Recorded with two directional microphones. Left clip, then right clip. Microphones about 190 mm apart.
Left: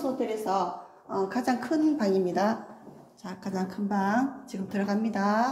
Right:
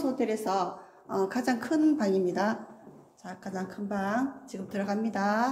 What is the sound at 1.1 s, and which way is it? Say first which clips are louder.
A woman's voice: left 1 dB; 15° right (ahead or behind).